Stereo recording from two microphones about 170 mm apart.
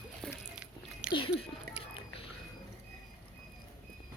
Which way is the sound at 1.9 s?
35° left (ahead or behind).